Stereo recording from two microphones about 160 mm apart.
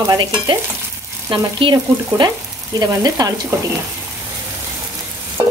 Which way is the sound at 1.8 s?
25° right (ahead or behind).